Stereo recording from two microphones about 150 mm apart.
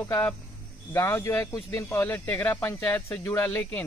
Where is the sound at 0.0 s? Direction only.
20° left (ahead or behind).